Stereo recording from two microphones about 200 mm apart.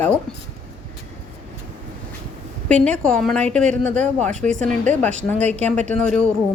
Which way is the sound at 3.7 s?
35° right (ahead or behind).